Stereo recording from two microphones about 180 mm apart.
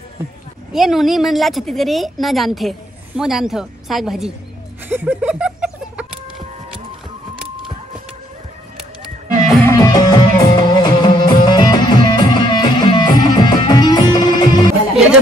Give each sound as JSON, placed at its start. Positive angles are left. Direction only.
{"t": 0.7, "sound": "a woman's voice", "side_deg": 0}
{"t": 4.8, "sound": "a sound", "side_deg": -10}
{"t": 9.7, "sound": "music", "side_deg": 20}